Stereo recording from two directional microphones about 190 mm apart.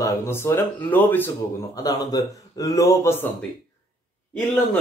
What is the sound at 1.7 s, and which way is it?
Speech, 20° left (ahead or behind).